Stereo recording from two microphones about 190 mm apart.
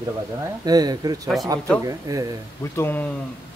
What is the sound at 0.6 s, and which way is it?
Speech, 20° right (ahead or behind).